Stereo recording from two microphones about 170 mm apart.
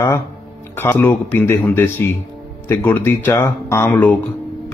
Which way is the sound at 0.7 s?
15° left (ahead or behind).